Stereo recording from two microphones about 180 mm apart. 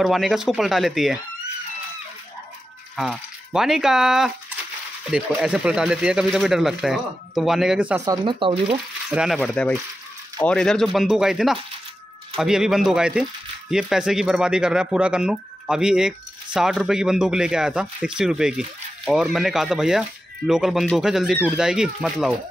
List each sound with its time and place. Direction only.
0.0 s speech: centre (ahead or behind)
3.0 s speech: centre (ahead or behind)
8.0 s speech: 25° right (ahead or behind)
9.1 s speech: 5° right (ahead or behind)
9.4 s speech: 5° left (ahead or behind)